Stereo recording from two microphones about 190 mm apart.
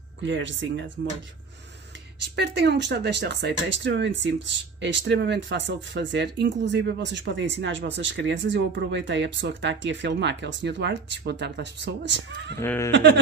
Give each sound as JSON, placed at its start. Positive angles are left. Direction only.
{"t": 0.2, "sound": "speech", "side_deg": -75}
{"t": 2.3, "sound": "speech", "side_deg": -65}
{"t": 12.5, "sound": "speech", "side_deg": 15}
{"t": 12.9, "sound": "a sound", "side_deg": -65}